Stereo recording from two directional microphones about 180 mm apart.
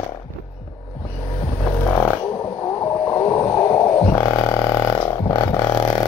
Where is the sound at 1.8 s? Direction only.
10° left (ahead or behind).